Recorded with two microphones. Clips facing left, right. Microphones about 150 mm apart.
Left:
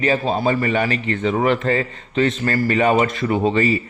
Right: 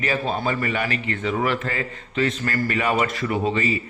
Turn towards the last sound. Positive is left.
turn(degrees=30)  # may be behind; listen again after turning